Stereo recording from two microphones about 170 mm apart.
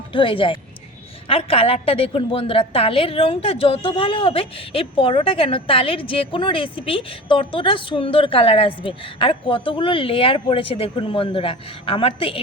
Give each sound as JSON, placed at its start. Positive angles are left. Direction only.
{"t": 0.1, "sound": "a woman's voice", "side_deg": 30}